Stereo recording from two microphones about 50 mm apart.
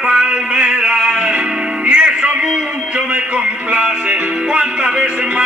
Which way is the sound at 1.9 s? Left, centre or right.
Right.